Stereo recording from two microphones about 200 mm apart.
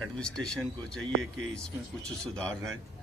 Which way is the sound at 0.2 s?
5° left (ahead or behind).